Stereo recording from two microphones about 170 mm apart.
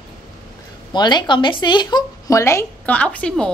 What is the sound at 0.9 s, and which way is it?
Speech, 25° left (ahead or behind).